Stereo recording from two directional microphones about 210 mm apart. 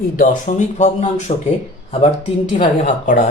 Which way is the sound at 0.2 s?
35° left (ahead or behind).